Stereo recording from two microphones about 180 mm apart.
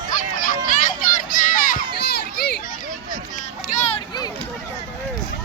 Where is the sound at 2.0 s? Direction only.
65° left (ahead or behind).